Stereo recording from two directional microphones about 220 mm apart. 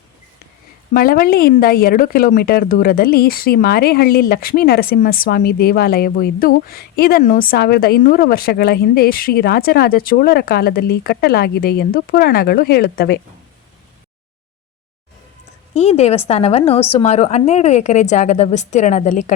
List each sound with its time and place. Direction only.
0.9 s speech: 40° left (ahead or behind)
15.7 s a woman's voice: 30° left (ahead or behind)